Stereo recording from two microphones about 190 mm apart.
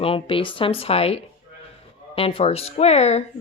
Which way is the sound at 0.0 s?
30° left (ahead or behind).